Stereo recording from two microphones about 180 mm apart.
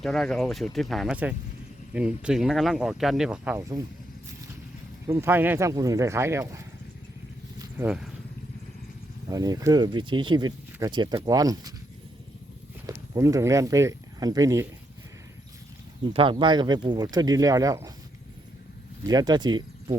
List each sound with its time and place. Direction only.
0.0 s speech: centre (ahead or behind)
5.0 s speech: 15° right (ahead or behind)
7.9 s speech: 5° right (ahead or behind)
9.3 s speech: 20° right (ahead or behind)
12.8 s speech: 15° right (ahead or behind)
16.4 s speech: 25° right (ahead or behind)
19.0 s speech: 20° right (ahead or behind)